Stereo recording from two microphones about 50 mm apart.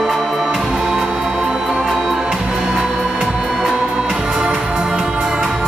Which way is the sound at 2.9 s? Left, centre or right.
Centre.